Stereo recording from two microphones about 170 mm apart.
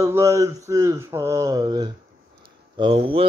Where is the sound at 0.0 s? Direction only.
15° right (ahead or behind).